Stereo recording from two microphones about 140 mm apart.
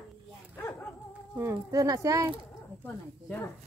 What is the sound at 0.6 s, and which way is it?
Dog, 15° left (ahead or behind).